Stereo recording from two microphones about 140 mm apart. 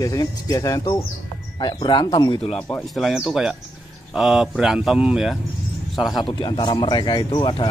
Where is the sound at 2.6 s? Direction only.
5° left (ahead or behind).